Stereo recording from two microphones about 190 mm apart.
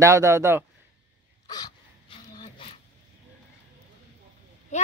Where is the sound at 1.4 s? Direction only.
20° left (ahead or behind).